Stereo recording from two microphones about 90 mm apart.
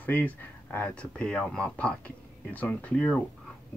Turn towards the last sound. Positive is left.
turn(degrees=15)  # may be behind; listen again after turning